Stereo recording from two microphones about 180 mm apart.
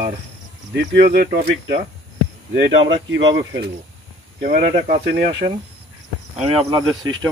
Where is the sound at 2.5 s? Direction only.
90° right.